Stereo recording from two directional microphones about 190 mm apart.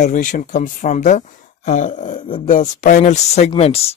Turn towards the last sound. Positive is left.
turn(degrees=30)  # may be behind; listen again after turning